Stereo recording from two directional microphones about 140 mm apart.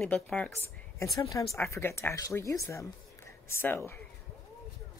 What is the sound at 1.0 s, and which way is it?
Speech, 25° left (ahead or behind).